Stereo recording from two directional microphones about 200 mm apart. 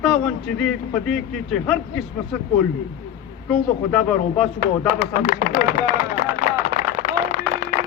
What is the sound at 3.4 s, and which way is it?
A man's voice, 5° left (ahead or behind).